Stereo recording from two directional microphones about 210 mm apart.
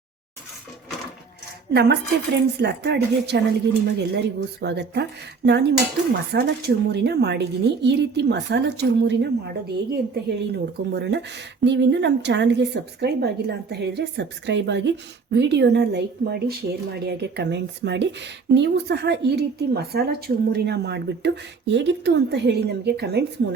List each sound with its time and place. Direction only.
1.7 s speech: 55° right (ahead or behind)